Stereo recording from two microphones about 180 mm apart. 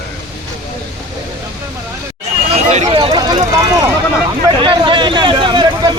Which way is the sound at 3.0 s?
25° right (ahead or behind).